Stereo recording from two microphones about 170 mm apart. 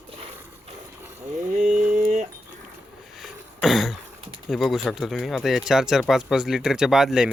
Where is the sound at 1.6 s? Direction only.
45° right (ahead or behind).